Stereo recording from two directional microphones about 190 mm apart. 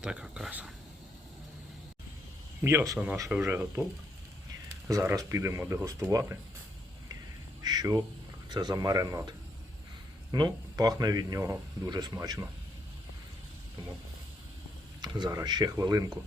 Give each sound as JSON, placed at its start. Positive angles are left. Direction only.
{"t": 0.0, "sound": "speech", "side_deg": -5}
{"t": 2.6, "sound": "speech", "side_deg": -15}
{"t": 4.9, "sound": "speech", "side_deg": -15}
{"t": 7.6, "sound": "speech", "side_deg": -20}
{"t": 10.3, "sound": "speech", "side_deg": -20}
{"t": 15.0, "sound": "speech", "side_deg": -20}